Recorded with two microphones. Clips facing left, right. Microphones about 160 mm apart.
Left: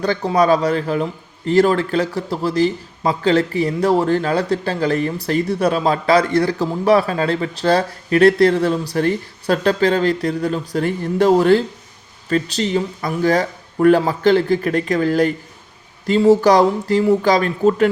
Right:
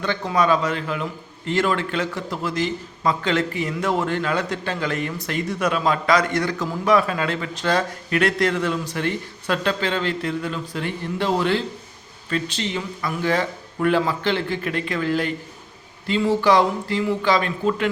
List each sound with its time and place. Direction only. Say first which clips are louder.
0.0 s speech: left 5 dB; 35° left (ahead or behind)